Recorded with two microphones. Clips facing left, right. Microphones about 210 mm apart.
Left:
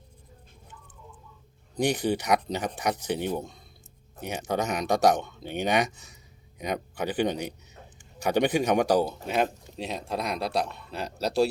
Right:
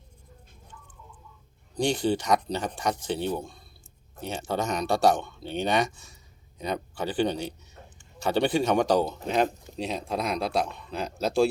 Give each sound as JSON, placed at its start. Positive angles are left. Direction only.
{"t": 1.7, "sound": "speech", "side_deg": 15}